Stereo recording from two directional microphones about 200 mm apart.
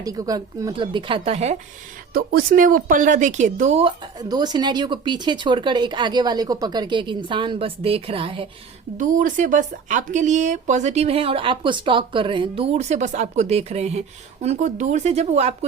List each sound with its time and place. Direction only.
0.0 s speech: 15° right (ahead or behind)
2.1 s speech: 45° right (ahead or behind)
4.2 s speech: 20° right (ahead or behind)
9.0 s speech: 40° right (ahead or behind)